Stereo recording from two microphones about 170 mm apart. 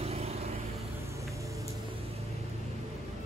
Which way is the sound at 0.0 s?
35° right (ahead or behind).